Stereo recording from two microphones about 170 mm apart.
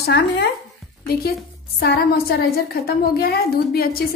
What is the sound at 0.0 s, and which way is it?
Speech, 70° left (ahead or behind).